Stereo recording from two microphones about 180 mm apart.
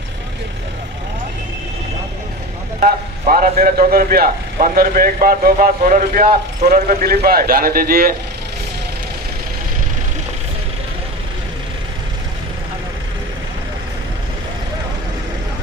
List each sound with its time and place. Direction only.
2.8 s a man's voice: 50° right (ahead or behind)